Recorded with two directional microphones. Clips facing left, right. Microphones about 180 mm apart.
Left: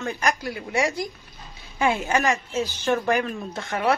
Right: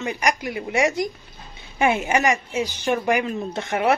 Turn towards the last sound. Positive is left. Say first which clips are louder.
# right 3 dB
turn(degrees=-20)  # may be behind; listen again after turning